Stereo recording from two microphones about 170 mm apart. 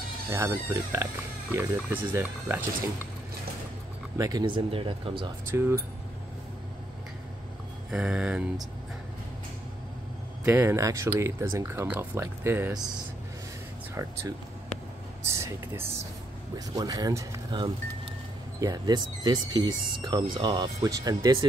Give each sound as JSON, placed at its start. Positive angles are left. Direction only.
{"t": 0.3, "sound": "speech", "side_deg": -15}
{"t": 4.2, "sound": "speech", "side_deg": -25}
{"t": 5.5, "sound": "speech", "side_deg": -15}
{"t": 7.9, "sound": "a sound", "side_deg": -5}
{"t": 10.4, "sound": "speech", "side_deg": -10}
{"t": 12.7, "sound": "speech", "side_deg": -25}
{"t": 15.2, "sound": "speech", "side_deg": -15}